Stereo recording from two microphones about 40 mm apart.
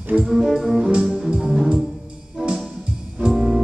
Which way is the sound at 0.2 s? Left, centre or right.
Centre.